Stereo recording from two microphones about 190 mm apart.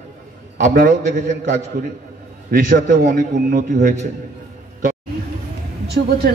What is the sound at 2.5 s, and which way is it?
A man's voice, 45° right (ahead or behind).